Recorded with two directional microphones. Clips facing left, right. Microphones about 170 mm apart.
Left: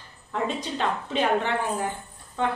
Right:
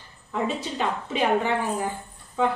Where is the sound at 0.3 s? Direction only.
5° right (ahead or behind).